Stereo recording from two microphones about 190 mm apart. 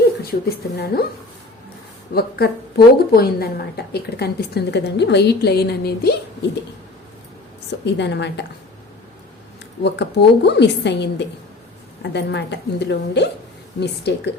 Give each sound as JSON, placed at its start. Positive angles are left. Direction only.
{"t": 0.2, "sound": "a woman's voice", "side_deg": 55}
{"t": 2.1, "sound": "a woman's voice", "side_deg": 55}
{"t": 7.7, "sound": "a woman's voice", "side_deg": 65}
{"t": 9.8, "sound": "a woman's voice", "side_deg": 65}